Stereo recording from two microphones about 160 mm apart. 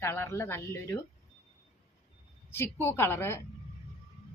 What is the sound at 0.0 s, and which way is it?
Speech, 15° left (ahead or behind).